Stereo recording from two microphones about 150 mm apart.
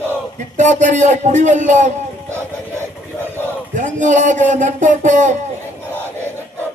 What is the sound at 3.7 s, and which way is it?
Speech, 55° right (ahead or behind).